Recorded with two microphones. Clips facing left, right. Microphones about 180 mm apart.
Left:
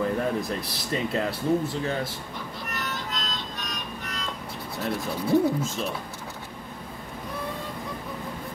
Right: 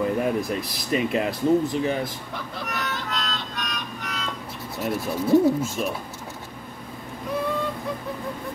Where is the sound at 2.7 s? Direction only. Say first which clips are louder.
Right 3 dB; 65° right (ahead or behind).